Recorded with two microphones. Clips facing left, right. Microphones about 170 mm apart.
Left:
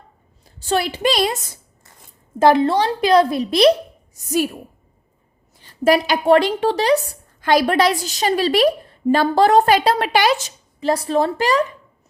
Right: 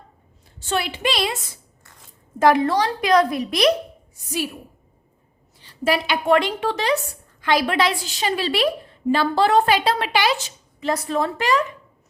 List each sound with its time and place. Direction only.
0.6 s a woman's voice: 35° left (ahead or behind)
2.4 s a woman's voice: 30° left (ahead or behind)
4.1 s a woman's voice: 45° left (ahead or behind)
5.5 s a woman's voice: 45° left (ahead or behind)